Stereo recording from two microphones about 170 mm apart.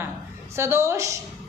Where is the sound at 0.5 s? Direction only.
15° right (ahead or behind).